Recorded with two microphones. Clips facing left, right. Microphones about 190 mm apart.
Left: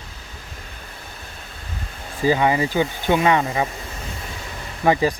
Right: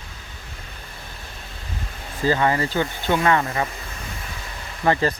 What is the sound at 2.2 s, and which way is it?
Speech, 15° left (ahead or behind).